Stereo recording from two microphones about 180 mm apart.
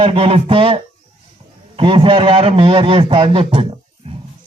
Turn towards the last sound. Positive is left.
turn(degrees=-30)  # may be behind; listen again after turning